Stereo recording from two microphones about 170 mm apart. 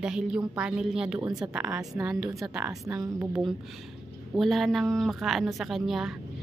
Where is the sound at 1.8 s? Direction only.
20° right (ahead or behind).